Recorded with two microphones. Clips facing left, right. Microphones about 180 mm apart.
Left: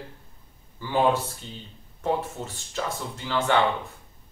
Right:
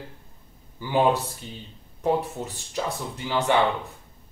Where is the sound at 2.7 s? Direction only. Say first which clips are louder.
Right 2 dB; 15° right (ahead or behind).